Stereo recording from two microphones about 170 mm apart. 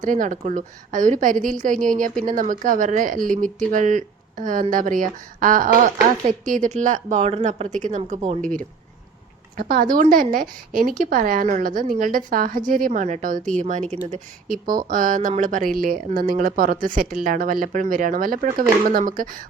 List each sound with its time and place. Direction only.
0.0 s speech: 50° right (ahead or behind)
8.4 s speech: 5° left (ahead or behind)
9.6 s speech: 60° right (ahead or behind)